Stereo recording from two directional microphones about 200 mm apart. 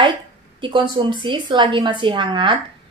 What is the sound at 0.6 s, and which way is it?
A woman's voice, 25° right (ahead or behind).